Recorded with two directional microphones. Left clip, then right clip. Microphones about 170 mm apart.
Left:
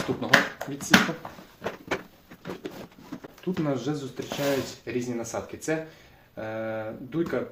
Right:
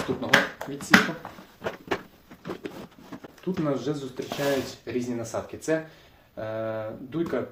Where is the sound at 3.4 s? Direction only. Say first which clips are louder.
Right 1 dB; 15° left (ahead or behind).